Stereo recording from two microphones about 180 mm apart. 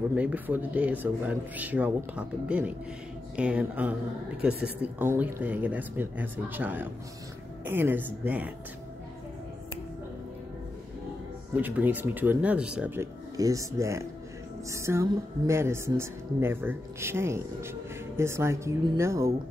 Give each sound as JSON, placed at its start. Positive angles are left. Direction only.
{"t": 0.1, "sound": "a woman's voice", "side_deg": -10}
{"t": 11.5, "sound": "a woman's voice", "side_deg": -10}